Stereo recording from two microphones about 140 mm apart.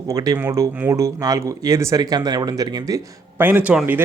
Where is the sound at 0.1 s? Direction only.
25° right (ahead or behind).